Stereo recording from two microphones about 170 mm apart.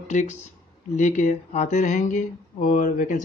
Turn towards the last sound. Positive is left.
turn(degrees=55)  # may be behind; listen again after turning